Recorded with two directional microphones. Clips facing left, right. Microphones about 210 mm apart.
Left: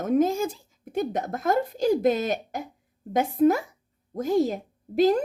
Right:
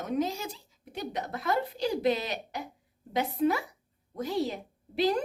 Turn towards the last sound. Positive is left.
turn(degrees=45)  # may be behind; listen again after turning